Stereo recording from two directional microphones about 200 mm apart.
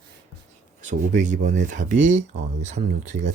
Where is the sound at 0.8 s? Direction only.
35° right (ahead or behind).